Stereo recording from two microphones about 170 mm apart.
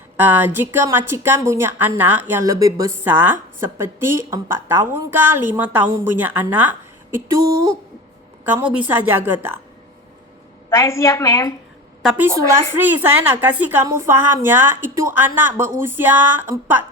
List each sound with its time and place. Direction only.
0.3 s a woman's voice: 10° right (ahead or behind)
8.5 s a woman's voice: 10° right (ahead or behind)
10.8 s a woman's voice: 15° left (ahead or behind)
12.0 s a woman's voice: 10° right (ahead or behind)